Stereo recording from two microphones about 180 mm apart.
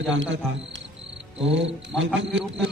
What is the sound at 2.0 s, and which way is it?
Speech, 90° right.